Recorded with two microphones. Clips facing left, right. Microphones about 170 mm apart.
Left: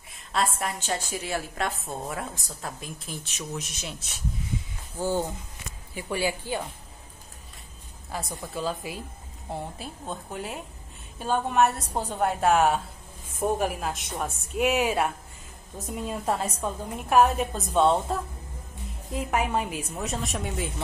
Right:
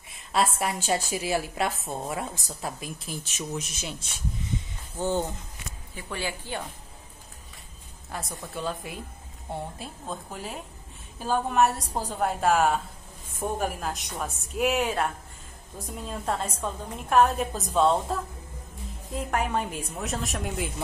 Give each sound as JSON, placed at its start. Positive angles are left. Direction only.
{"t": 0.1, "sound": "a woman's voice", "side_deg": -5}
{"t": 8.1, "sound": "a woman's voice", "side_deg": 0}